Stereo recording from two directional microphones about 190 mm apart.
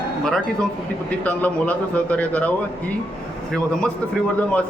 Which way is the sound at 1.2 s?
10° left (ahead or behind).